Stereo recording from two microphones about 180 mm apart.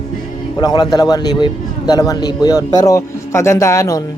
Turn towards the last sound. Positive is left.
turn(degrees=20)  # may be behind; listen again after turning